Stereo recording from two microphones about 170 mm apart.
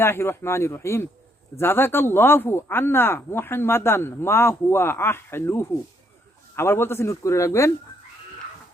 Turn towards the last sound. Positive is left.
turn(degrees=15)  # may be behind; listen again after turning